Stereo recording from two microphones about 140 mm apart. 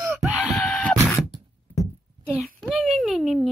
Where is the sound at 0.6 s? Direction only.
5° left (ahead or behind).